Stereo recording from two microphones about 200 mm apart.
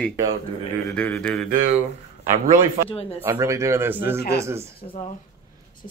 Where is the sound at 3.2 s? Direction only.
15° right (ahead or behind).